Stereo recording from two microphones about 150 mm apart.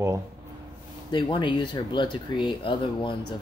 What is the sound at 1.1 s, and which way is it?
Speech, 30° left (ahead or behind).